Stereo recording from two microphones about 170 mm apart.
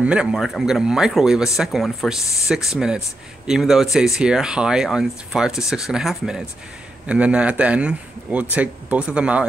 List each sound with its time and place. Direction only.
0.0 s speech: 5° right (ahead or behind)